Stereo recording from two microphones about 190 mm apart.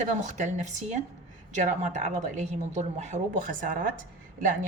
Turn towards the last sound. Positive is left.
turn(degrees=-45)  # may be behind; listen again after turning